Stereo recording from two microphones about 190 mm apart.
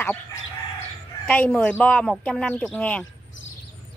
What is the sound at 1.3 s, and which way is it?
A woman's voice, 5° left (ahead or behind).